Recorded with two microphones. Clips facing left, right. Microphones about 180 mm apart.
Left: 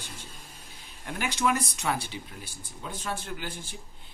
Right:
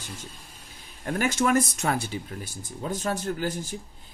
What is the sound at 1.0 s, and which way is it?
Speech, 45° right (ahead or behind).